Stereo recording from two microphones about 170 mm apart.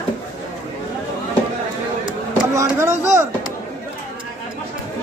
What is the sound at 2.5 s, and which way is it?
Speech, 15° right (ahead or behind).